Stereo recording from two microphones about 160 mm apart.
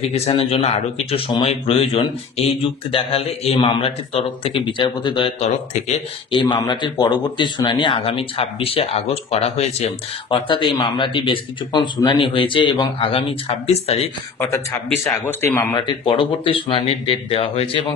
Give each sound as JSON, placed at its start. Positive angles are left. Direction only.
{"t": 0.0, "sound": "a man's voice", "side_deg": 40}
{"t": 14.4, "sound": "a man's voice", "side_deg": 15}
{"t": 15.7, "sound": "a man's voice", "side_deg": 30}